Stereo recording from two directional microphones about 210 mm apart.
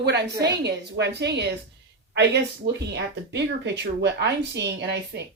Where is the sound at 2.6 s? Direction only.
50° right (ahead or behind).